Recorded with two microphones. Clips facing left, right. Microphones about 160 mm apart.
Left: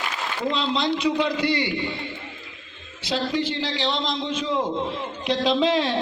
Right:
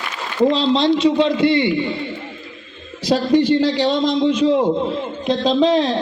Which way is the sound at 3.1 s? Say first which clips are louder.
Right 8 dB; 45° right (ahead or behind).